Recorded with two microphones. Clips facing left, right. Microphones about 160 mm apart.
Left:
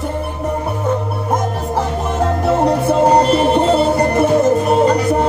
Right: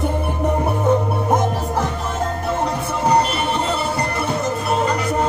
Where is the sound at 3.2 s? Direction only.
35° left (ahead or behind).